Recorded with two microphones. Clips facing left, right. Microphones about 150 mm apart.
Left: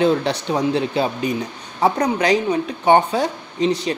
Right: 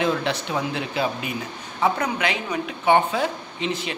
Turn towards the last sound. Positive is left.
turn(degrees=35)  # may be behind; listen again after turning